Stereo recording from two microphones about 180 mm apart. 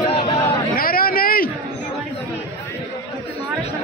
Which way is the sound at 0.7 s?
55° left (ahead or behind).